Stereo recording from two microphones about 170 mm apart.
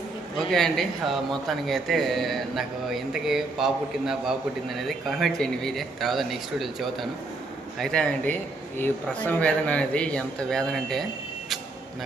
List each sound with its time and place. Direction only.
0.3 s speech: centre (ahead or behind)